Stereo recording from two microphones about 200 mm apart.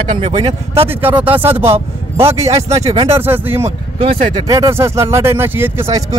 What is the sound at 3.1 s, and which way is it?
Speech, 10° right (ahead or behind).